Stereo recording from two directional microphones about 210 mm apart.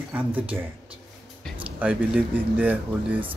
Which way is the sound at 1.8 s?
5° right (ahead or behind).